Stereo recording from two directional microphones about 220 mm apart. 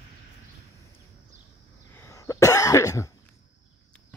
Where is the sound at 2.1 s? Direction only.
15° left (ahead or behind).